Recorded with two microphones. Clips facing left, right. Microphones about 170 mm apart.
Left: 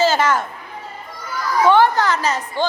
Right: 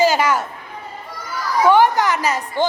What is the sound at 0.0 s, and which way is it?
Speech, 10° right (ahead or behind).